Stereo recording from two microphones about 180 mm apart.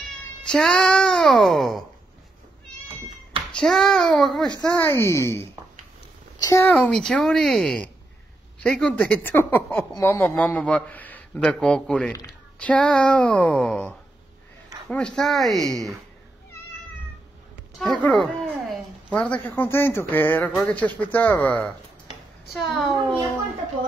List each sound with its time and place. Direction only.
0.5 s speech: 5° left (ahead or behind)
3.5 s speech: centre (ahead or behind)
4.6 s speech: 10° left (ahead or behind)
6.7 s speech: 5° left (ahead or behind)
12.1 s speech: 20° left (ahead or behind)
12.5 s speech: 5° left (ahead or behind)
18.0 s a woman's voice: centre (ahead or behind)